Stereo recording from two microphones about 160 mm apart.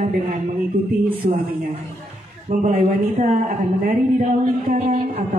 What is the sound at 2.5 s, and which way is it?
A woman's voice, 55° right (ahead or behind).